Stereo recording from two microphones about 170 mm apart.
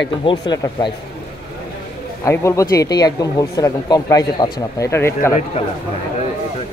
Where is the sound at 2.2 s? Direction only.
15° left (ahead or behind).